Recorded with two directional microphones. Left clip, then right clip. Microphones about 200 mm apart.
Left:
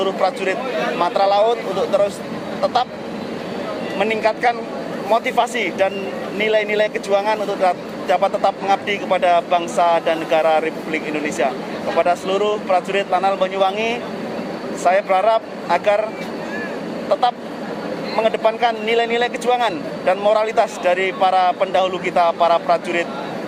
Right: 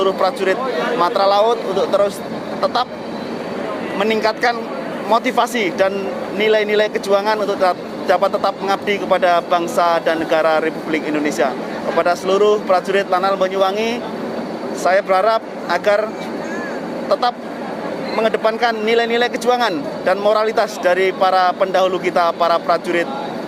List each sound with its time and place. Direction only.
0.0 s speech: 50° right (ahead or behind)
3.9 s speech: 45° right (ahead or behind)
14.8 s speech: 45° right (ahead or behind)
17.1 s speech: 50° right (ahead or behind)